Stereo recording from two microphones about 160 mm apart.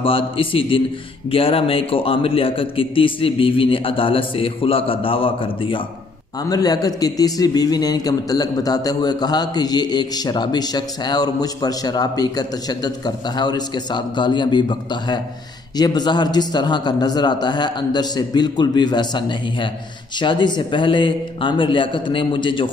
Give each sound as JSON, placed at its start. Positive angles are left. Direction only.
{"t": 0.0, "sound": "a man's voice", "side_deg": 35}